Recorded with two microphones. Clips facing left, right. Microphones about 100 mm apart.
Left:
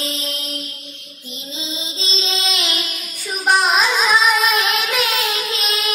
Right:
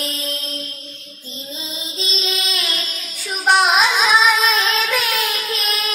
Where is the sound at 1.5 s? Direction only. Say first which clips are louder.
Left 3 dB; 25° left (ahead or behind).